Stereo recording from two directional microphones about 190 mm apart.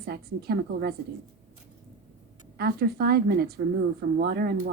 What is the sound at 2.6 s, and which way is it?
A woman's voice, 55° right (ahead or behind).